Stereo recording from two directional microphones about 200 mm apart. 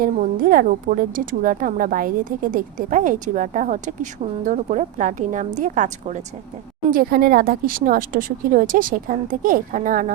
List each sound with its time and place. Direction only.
0.0 s a woman's voice: 45° right (ahead or behind)
6.9 s speech: 50° right (ahead or behind)